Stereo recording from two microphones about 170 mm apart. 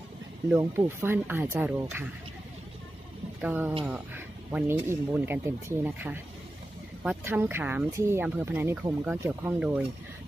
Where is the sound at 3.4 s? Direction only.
10° right (ahead or behind).